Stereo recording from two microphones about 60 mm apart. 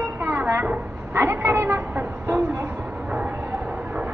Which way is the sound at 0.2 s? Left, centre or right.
Right.